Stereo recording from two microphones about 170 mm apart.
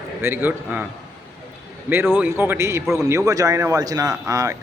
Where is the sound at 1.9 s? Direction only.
15° right (ahead or behind).